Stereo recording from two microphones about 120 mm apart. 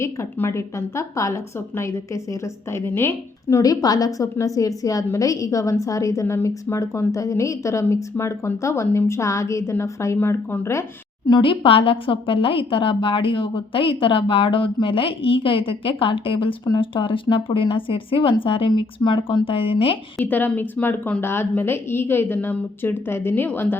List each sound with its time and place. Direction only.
0.0 s a woman's voice: 20° left (ahead or behind)
3.5 s a woman's voice: 30° left (ahead or behind)
11.3 s a woman's voice: 45° left (ahead or behind)
20.1 s a woman's voice: 15° left (ahead or behind)